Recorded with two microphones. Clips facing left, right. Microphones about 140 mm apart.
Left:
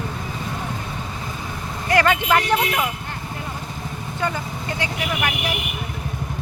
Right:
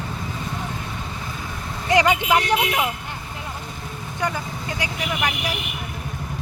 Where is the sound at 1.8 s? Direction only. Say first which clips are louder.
Even; 15° right (ahead or behind).